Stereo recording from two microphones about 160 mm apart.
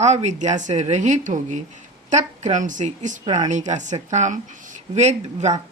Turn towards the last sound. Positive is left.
turn(degrees=-45)  # may be behind; listen again after turning